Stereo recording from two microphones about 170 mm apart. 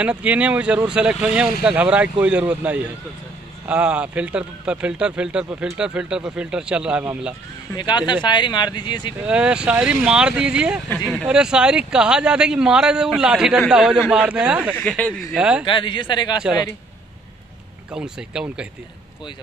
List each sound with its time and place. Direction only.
0.0 s speech: 10° right (ahead or behind)
7.7 s speech: 25° left (ahead or behind)
9.2 s a man's voice: 5° right (ahead or behind)
14.8 s speech: 5° left (ahead or behind)
15.3 s a man's voice: 5° right (ahead or behind)
15.6 s speech: 30° left (ahead or behind)
17.9 s a man's voice: 5° right (ahead or behind)